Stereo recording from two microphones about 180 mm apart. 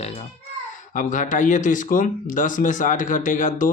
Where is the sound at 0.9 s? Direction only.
45° left (ahead or behind).